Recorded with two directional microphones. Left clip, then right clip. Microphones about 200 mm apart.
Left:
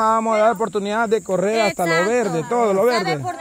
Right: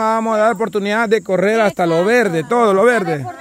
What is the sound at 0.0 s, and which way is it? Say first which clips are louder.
Speech: right 1 dB; 25° right (ahead or behind).